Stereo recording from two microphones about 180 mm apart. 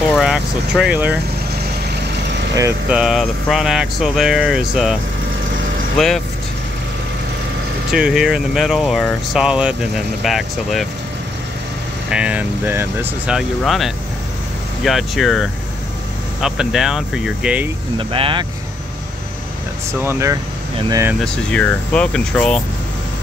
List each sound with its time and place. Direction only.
0.1 s speech: centre (ahead or behind)
2.9 s speech: 5° right (ahead or behind)
5.9 s speech: centre (ahead or behind)
7.9 s speech: 5° right (ahead or behind)
12.1 s speech: 5° right (ahead or behind)
17.9 s speech: 30° right (ahead or behind)
20.0 s speech: 15° right (ahead or behind)
21.2 s speech: 5° left (ahead or behind)